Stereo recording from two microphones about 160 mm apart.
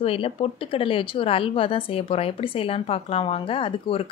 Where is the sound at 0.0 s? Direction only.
35° left (ahead or behind).